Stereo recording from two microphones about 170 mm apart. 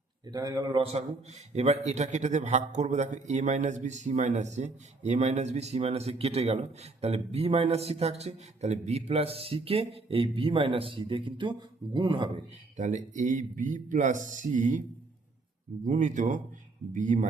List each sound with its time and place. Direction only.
0.3 s a man's voice: 20° right (ahead or behind)
12.7 s speech: 45° right (ahead or behind)